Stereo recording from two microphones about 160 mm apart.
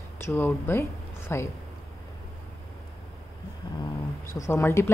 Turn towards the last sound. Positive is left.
turn(degrees=15)  # may be behind; listen again after turning